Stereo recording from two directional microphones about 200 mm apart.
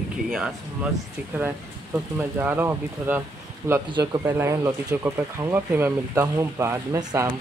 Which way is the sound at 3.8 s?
20° right (ahead or behind).